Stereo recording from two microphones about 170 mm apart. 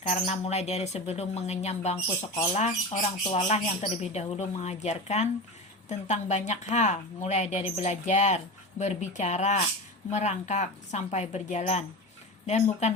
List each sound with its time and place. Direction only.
0.1 s speech: 40° left (ahead or behind)